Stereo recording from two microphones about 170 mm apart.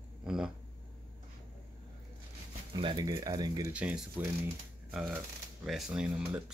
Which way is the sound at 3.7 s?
5° right (ahead or behind).